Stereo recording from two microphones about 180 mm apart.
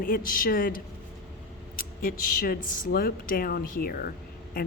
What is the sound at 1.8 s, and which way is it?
A woman's voice, 55° left (ahead or behind).